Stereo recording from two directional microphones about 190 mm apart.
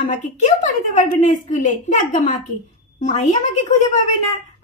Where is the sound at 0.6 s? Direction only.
40° left (ahead or behind).